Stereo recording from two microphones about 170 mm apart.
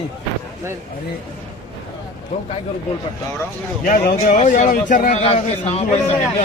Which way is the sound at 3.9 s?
50° left (ahead or behind).